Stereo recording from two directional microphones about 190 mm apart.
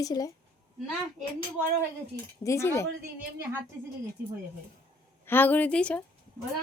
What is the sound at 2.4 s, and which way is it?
Speech, 15° left (ahead or behind).